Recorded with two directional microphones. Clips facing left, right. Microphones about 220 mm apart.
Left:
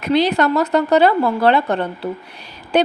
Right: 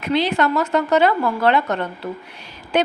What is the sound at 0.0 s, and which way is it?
A woman's voice, 40° left (ahead or behind).